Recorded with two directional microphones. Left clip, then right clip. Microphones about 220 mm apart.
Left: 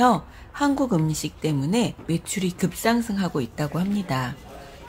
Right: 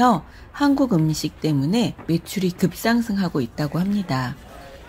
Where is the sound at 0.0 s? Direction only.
10° right (ahead or behind).